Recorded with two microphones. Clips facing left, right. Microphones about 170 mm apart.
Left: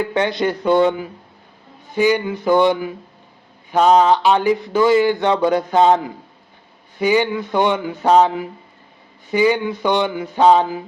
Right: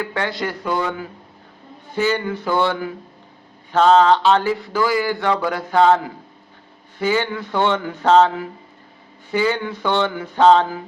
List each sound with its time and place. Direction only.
0.0 s speech: 20° left (ahead or behind)
2.0 s speech: 15° left (ahead or behind)